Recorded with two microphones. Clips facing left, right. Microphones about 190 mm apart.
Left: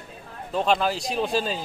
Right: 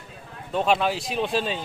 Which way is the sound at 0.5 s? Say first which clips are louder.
Even; centre (ahead or behind).